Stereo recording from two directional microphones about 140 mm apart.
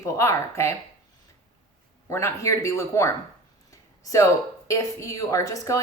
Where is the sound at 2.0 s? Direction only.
20° left (ahead or behind).